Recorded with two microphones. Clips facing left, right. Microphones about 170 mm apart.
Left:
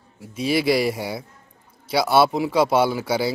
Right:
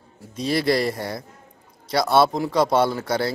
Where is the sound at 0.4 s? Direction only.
5° left (ahead or behind).